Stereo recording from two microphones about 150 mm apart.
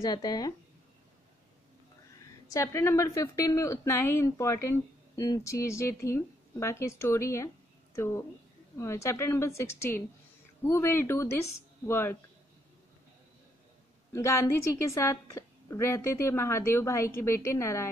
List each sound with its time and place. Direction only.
0.0 s speech: 25° left (ahead or behind)
2.5 s a woman's voice: 20° left (ahead or behind)
14.1 s speech: 20° left (ahead or behind)